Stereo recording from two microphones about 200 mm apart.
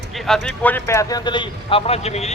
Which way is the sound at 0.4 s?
10° left (ahead or behind).